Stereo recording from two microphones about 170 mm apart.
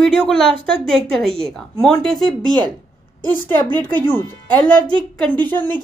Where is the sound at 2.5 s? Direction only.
25° right (ahead or behind).